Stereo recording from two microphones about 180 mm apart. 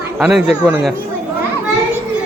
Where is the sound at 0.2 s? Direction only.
5° right (ahead or behind).